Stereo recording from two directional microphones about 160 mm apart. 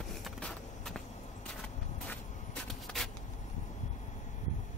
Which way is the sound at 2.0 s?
5° left (ahead or behind).